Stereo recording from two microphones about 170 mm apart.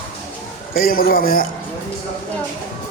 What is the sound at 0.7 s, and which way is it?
Speech, 60° left (ahead or behind).